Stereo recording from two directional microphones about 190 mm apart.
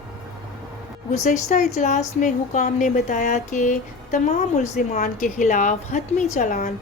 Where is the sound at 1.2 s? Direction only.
40° left (ahead or behind).